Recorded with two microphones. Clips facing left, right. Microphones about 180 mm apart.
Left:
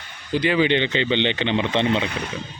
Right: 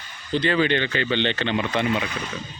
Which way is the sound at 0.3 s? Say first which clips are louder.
Left 2 dB; 15° left (ahead or behind).